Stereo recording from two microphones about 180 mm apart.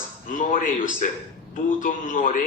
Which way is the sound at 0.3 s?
45° left (ahead or behind).